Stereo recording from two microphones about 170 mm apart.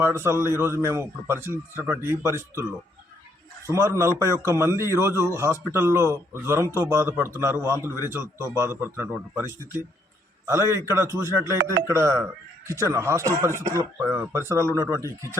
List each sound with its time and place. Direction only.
0.0 s a man's voice: 15° right (ahead or behind)
3.7 s a man's voice: 15° right (ahead or behind)